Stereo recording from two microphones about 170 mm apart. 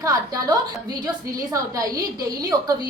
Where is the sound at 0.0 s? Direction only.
20° right (ahead or behind).